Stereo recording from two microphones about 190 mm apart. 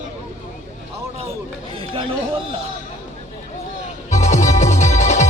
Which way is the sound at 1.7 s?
25° right (ahead or behind).